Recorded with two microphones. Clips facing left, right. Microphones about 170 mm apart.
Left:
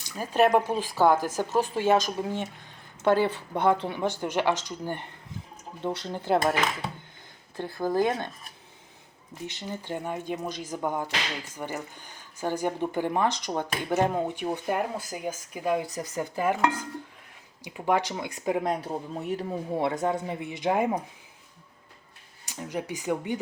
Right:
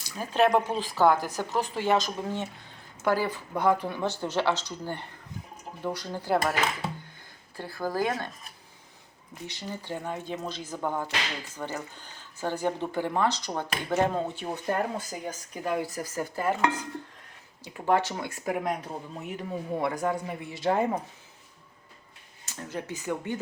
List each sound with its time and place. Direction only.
0.2 s speech: 10° left (ahead or behind)
7.5 s speech: 20° left (ahead or behind)
9.5 s speech: 20° left (ahead or behind)
22.4 s speech: 15° left (ahead or behind)